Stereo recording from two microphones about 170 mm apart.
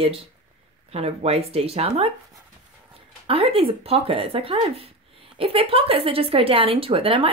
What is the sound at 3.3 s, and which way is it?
Speech, 35° right (ahead or behind).